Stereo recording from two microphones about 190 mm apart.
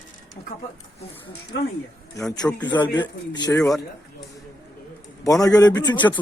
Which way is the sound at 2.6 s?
20° left (ahead or behind).